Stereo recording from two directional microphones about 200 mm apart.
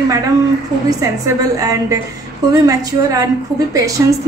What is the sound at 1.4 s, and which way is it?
A woman's voice, 15° right (ahead or behind).